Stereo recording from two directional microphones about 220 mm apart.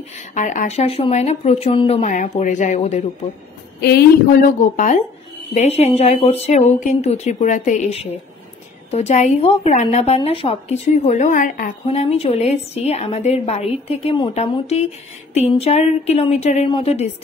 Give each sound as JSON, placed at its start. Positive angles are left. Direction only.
{"t": 0.3, "sound": "speech", "side_deg": 35}
{"t": 3.8, "sound": "a woman's voice", "side_deg": 45}
{"t": 4.7, "sound": "a woman's voice", "side_deg": 35}